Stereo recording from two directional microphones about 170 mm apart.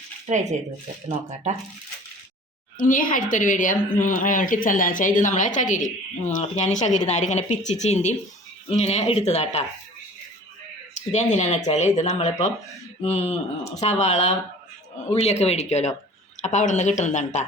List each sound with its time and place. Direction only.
2.7 s speech: 55° left (ahead or behind)
10.9 s speech: 45° left (ahead or behind)